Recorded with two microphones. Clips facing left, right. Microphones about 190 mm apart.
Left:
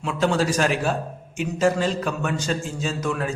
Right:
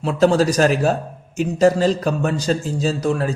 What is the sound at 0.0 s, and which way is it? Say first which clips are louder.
A man's voice: right 6 dB; 35° right (ahead or behind).